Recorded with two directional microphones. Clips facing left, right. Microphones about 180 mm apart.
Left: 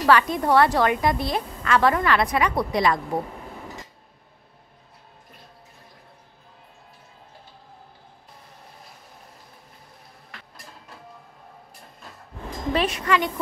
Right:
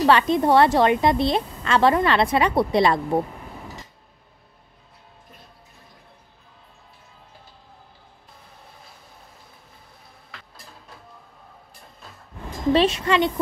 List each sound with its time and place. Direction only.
0.0 s a woman's voice: 25° right (ahead or behind)
12.7 s a woman's voice: 25° right (ahead or behind)